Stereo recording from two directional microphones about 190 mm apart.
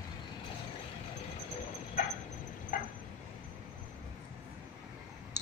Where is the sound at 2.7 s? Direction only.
45° left (ahead or behind).